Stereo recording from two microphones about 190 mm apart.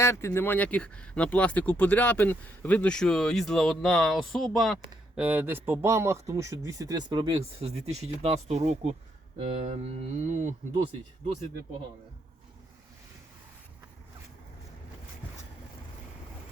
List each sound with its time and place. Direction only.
0.0 s speech: 15° left (ahead or behind); by 10.5 s 40° right (ahead or behind)